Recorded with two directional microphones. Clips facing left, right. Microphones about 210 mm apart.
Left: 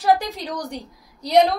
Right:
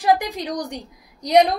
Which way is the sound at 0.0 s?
15° right (ahead or behind).